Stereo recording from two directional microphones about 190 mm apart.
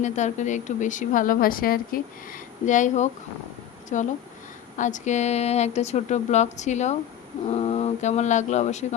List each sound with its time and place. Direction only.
0.0 s a woman's voice: 40° left (ahead or behind)